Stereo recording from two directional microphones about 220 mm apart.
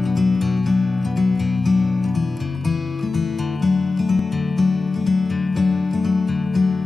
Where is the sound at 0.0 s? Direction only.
Centre (ahead or behind).